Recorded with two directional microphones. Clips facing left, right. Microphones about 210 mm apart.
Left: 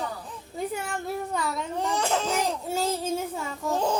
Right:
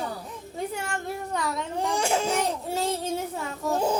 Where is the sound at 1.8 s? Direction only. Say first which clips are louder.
Right 1 dB; 10° right (ahead or behind).